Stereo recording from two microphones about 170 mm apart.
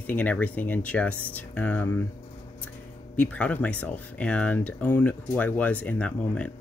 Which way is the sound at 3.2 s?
10° left (ahead or behind).